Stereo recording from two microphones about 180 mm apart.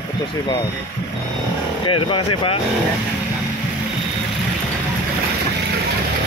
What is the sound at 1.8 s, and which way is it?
Speech, 30° left (ahead or behind).